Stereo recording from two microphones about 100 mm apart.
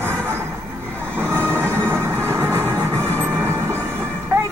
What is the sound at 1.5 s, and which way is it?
Train, 25° right (ahead or behind).